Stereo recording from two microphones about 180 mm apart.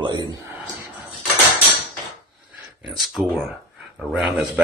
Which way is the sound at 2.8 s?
Centre (ahead or behind).